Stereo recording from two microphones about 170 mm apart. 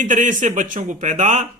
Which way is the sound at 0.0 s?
50° right (ahead or behind).